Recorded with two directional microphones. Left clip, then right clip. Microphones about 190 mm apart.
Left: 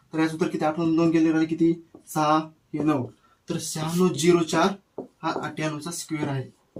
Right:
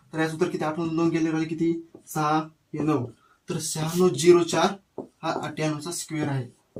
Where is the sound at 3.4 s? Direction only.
15° right (ahead or behind).